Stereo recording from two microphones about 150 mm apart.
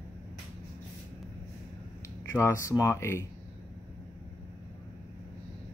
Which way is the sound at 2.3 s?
20° left (ahead or behind).